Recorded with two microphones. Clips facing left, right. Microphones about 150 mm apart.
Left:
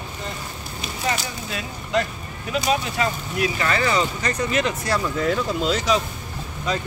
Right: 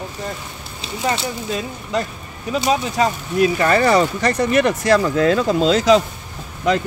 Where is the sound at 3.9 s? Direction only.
70° right (ahead or behind); by 6.0 s 90° right.